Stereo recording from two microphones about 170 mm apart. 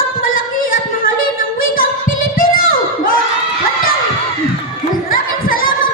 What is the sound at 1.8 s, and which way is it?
Music, 55° left (ahead or behind).